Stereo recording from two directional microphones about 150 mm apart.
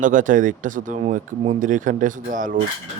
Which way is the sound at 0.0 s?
60° right (ahead or behind).